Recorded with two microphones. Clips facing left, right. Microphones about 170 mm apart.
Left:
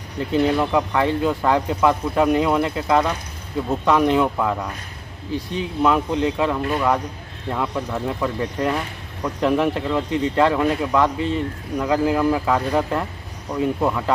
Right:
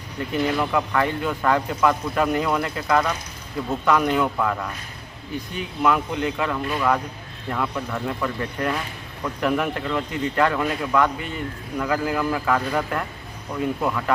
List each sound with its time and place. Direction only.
0.3 s speech: 25° left (ahead or behind)